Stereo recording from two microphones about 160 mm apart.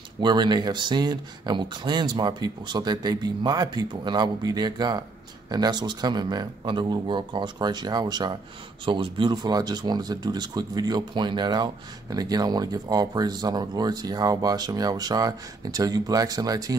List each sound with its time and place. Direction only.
0.2 s speech: 30° right (ahead or behind)